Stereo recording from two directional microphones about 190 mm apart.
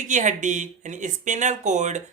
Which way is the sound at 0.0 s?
40° right (ahead or behind).